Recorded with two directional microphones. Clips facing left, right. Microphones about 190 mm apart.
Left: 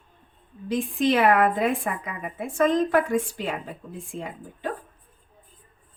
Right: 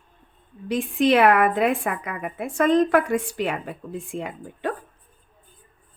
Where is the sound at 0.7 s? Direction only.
70° right (ahead or behind).